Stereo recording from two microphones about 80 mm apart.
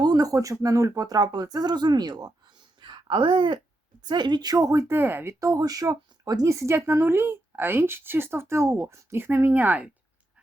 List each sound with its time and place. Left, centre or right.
0.0 s a sound: right
0.6 s speech: right
2.8 s speech: right
4.0 s a woman's voice: right
4.5 s speech: right
4.9 s speech: right
5.5 s speech: right